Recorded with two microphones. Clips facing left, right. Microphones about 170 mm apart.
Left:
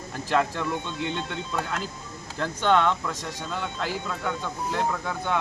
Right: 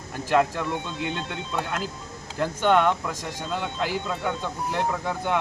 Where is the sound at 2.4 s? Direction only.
10° right (ahead or behind).